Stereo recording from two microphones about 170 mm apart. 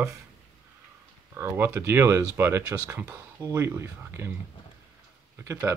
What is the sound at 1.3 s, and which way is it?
Speech, 15° right (ahead or behind).